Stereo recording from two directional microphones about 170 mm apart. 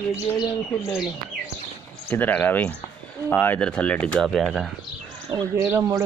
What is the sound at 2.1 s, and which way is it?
Speech, 10° left (ahead or behind).